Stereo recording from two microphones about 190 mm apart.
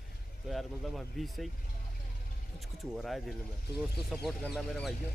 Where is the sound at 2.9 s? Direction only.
Centre (ahead or behind).